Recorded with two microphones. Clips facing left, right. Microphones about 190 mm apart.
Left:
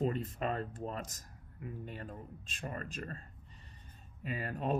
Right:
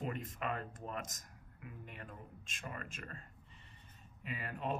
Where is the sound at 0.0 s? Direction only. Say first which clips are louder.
Left 6 dB; 30° left (ahead or behind).